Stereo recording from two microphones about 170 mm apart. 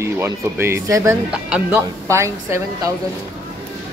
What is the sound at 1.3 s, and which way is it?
Speech, 5° right (ahead or behind).